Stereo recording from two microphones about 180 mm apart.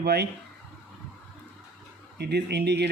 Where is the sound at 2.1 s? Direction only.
70° right (ahead or behind).